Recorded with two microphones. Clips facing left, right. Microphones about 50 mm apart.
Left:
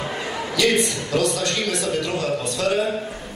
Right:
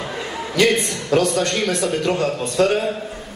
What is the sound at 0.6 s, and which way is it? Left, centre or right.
A man's voice, right.